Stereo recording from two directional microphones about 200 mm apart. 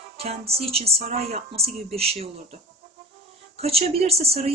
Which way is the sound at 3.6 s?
30° right (ahead or behind).